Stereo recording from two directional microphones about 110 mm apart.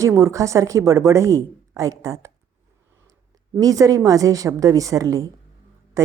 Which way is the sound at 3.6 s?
35° right (ahead or behind).